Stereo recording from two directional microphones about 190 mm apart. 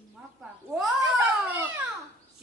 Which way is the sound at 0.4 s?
Centre (ahead or behind).